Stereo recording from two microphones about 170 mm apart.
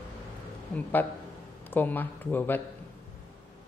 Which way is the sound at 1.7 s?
10° left (ahead or behind).